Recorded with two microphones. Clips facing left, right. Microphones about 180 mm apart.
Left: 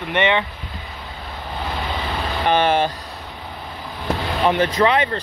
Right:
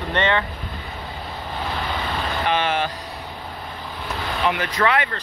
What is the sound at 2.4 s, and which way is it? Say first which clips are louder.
Vehicle: left 6 dB; 40° left (ahead or behind).